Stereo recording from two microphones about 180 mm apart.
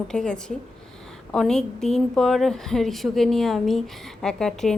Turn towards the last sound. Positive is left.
turn(degrees=5)  # may be behind; listen again after turning